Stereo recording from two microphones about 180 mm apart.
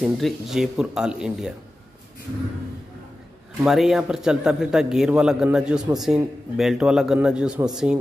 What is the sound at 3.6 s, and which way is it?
A man's voice, centre (ahead or behind).